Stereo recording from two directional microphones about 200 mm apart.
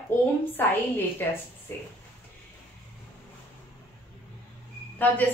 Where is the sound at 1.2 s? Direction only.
10° left (ahead or behind).